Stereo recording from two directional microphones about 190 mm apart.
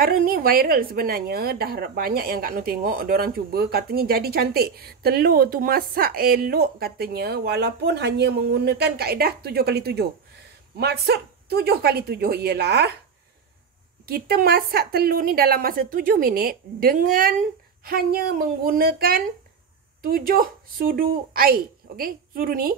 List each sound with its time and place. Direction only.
0.0 s a woman's voice: 50° right (ahead or behind)
14.0 s a woman's voice: 55° right (ahead or behind)